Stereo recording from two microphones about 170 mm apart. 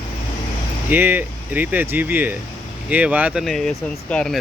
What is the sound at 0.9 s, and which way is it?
Speech, 10° right (ahead or behind).